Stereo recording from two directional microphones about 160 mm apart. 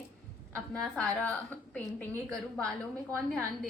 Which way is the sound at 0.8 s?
5° left (ahead or behind).